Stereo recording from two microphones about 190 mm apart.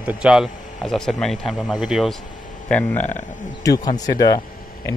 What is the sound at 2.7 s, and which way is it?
Speech, 10° left (ahead or behind).